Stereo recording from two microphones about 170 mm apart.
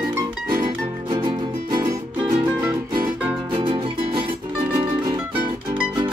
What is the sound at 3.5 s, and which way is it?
Music, 30° right (ahead or behind).